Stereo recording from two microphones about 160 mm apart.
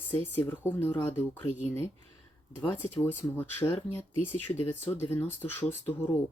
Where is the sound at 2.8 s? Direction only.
10° left (ahead or behind).